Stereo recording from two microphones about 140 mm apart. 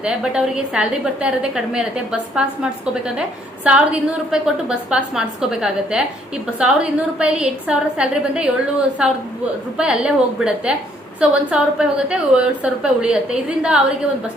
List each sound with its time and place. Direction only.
0.0 s a woman's voice: 5° right (ahead or behind)